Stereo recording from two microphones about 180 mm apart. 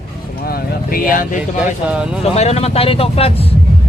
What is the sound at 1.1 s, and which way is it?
Heart sounds, 50° left (ahead or behind).